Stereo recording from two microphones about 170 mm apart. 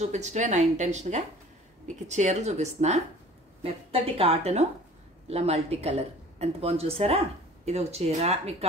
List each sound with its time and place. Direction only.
0.0 s speech: 45° right (ahead or behind)